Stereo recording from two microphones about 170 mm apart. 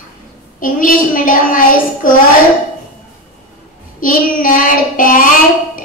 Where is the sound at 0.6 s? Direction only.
55° left (ahead or behind).